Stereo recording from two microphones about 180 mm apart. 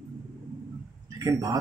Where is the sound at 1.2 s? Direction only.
20° right (ahead or behind).